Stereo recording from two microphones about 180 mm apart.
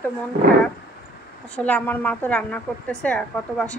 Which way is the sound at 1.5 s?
10° left (ahead or behind).